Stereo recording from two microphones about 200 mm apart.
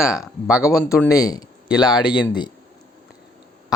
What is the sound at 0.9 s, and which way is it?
Speech, 15° left (ahead or behind).